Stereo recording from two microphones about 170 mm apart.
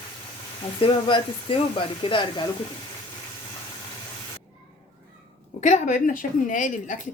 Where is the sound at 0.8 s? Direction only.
30° left (ahead or behind).